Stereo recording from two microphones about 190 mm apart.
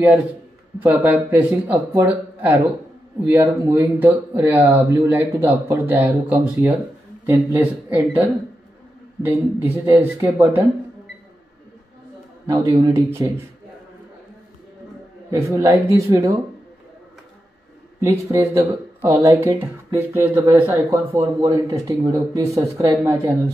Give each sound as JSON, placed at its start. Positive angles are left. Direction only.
{"t": 0.8, "sound": "speech", "side_deg": -10}
{"t": 12.4, "sound": "speech", "side_deg": -20}
{"t": 15.3, "sound": "speech", "side_deg": -15}
{"t": 18.0, "sound": "speech", "side_deg": -15}